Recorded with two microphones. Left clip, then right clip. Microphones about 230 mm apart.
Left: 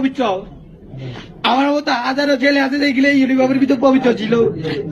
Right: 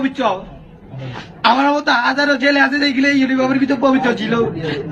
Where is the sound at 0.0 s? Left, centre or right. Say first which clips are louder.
Even; centre.